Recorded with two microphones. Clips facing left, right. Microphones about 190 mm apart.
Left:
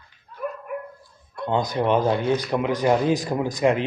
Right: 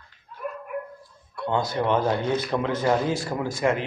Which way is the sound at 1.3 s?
20° left (ahead or behind).